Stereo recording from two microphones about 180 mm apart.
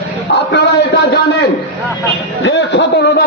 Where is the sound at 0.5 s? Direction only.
70° left (ahead or behind).